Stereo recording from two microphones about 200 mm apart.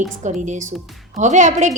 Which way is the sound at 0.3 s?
35° right (ahead or behind).